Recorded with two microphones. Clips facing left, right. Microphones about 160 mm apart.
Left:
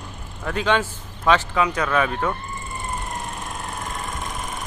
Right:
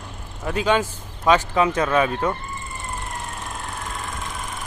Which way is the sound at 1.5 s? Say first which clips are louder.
Right 2 dB; 25° right (ahead or behind).